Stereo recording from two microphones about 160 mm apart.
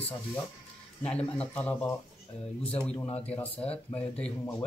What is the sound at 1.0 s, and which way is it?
Speech, 10° left (ahead or behind).